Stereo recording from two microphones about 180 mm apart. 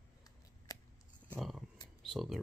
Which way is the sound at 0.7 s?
20° left (ahead or behind).